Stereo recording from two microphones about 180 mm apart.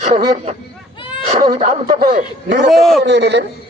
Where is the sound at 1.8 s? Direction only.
55° right (ahead or behind).